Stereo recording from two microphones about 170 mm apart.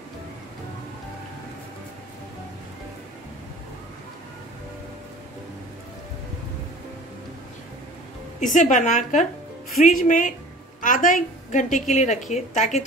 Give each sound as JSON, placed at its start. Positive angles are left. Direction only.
{"t": 8.4, "sound": "a woman's voice", "side_deg": 50}